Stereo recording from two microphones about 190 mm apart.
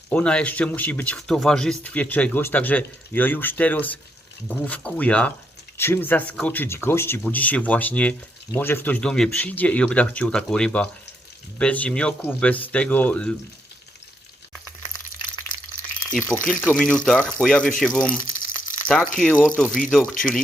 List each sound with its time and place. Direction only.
0.1 s speech: 5° left (ahead or behind)
16.4 s speech: 5° left (ahead or behind)